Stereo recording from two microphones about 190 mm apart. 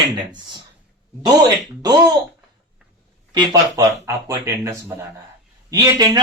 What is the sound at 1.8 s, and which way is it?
Speech, 20° right (ahead or behind).